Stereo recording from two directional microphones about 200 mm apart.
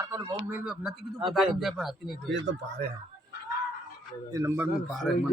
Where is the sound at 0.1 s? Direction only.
15° right (ahead or behind).